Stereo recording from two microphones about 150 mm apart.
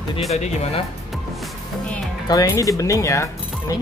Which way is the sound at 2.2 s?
25° left (ahead or behind).